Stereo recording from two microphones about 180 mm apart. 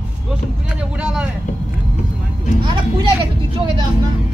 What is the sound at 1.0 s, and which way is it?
Speech, 5° right (ahead or behind).